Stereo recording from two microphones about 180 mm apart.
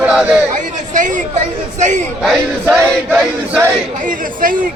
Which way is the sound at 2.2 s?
Centre (ahead or behind).